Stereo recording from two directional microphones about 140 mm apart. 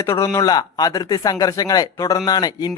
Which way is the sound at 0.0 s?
20° left (ahead or behind).